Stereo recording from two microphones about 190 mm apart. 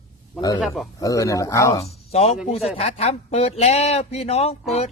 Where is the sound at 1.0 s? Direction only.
15° left (ahead or behind).